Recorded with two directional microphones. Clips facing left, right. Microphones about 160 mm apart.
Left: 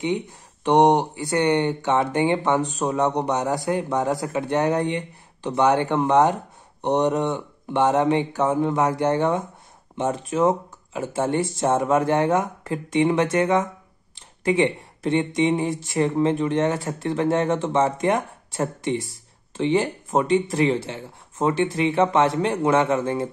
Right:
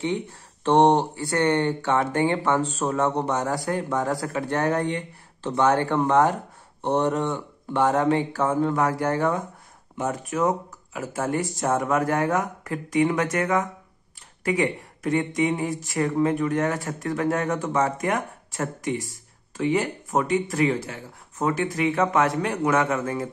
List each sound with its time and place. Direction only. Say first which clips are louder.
0.0 s speech: left 2 dB; 15° left (ahead or behind)